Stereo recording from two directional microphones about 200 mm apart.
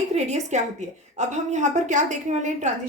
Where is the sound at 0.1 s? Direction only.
35° right (ahead or behind).